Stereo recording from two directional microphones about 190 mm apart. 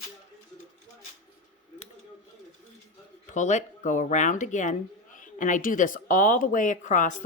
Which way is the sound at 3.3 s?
40° left (ahead or behind).